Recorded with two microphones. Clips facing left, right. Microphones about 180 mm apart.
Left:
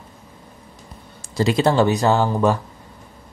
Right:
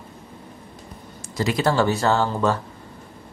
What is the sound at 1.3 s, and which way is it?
Speech, 25° left (ahead or behind).